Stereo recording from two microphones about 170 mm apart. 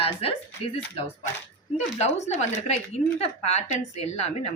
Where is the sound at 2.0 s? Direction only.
40° left (ahead or behind).